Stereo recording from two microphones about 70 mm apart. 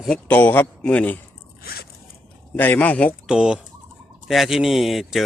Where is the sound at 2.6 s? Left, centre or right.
Left.